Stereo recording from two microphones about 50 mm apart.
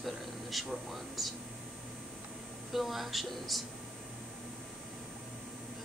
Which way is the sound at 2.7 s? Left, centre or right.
Centre.